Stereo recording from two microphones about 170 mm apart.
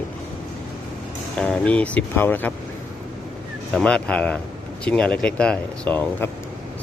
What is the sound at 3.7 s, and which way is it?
Speech, 5° left (ahead or behind).